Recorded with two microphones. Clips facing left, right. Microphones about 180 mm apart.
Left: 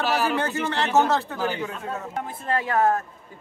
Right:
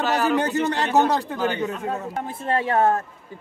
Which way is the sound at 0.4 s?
15° right (ahead or behind).